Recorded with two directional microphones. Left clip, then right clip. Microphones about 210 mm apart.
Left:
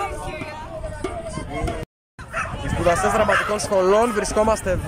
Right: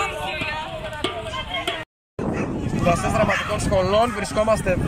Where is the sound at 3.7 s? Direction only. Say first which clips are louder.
Left 2 dB; 10° left (ahead or behind).